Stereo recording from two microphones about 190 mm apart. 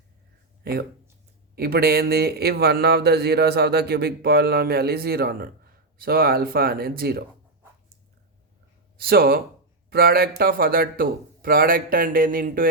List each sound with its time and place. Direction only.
0.6 s a man's voice: 55° right (ahead or behind)
9.0 s a man's voice: 50° right (ahead or behind)